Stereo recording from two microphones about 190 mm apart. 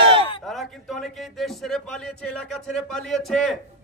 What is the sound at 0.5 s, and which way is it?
A man's voice, centre (ahead or behind).